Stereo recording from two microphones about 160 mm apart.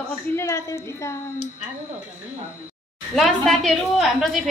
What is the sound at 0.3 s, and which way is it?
Speech, 15° left (ahead or behind).